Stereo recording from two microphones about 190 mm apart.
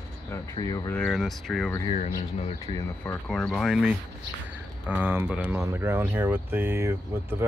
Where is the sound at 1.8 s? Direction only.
35° left (ahead or behind).